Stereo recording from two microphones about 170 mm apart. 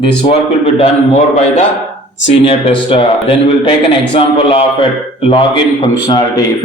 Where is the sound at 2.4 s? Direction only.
35° left (ahead or behind).